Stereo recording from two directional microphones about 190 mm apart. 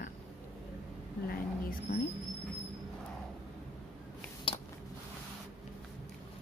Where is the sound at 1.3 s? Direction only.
50° left (ahead or behind).